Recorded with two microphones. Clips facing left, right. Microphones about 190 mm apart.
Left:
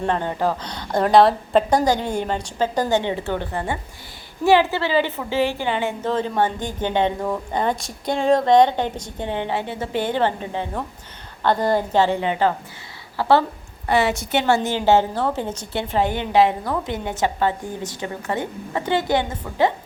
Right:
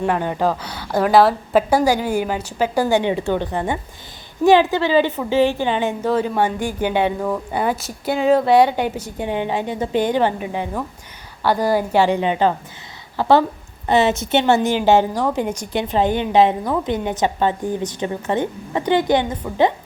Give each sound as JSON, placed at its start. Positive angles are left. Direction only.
{"t": 0.0, "sound": "a woman's voice", "side_deg": -10}